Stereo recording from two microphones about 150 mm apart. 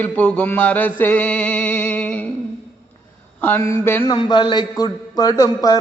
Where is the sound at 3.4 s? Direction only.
15° left (ahead or behind).